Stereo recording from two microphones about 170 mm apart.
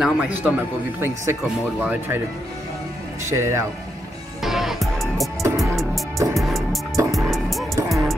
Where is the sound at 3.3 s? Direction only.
15° right (ahead or behind).